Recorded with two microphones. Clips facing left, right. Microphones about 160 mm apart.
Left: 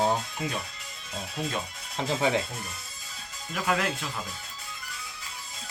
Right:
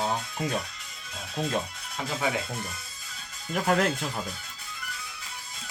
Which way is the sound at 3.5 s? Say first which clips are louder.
Right 4 dB; 45° right (ahead or behind).